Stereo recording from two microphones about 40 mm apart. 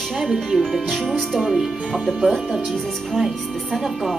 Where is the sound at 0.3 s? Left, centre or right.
Centre.